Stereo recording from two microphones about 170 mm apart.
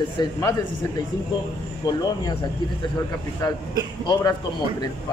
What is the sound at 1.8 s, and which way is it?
Speech, 25° left (ahead or behind).